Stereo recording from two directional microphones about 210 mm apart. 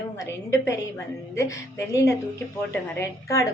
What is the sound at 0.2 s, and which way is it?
A woman's voice, 15° left (ahead or behind).